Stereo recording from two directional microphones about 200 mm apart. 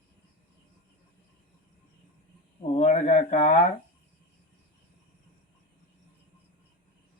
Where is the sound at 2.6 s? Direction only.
35° left (ahead or behind).